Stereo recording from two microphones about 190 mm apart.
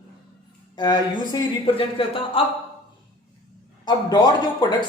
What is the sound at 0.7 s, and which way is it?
A woman's voice, 20° left (ahead or behind).